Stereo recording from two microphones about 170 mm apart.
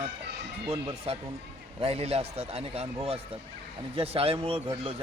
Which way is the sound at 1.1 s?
35° right (ahead or behind).